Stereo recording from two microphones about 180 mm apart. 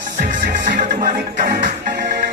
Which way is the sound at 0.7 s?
45° right (ahead or behind).